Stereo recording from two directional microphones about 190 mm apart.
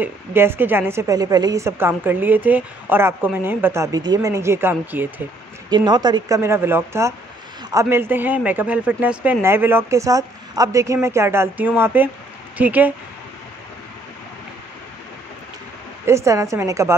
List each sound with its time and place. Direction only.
0.0 s a woman's voice: 10° right (ahead or behind)
5.7 s a woman's voice: 20° right (ahead or behind)
16.1 s a woman's voice: 15° right (ahead or behind)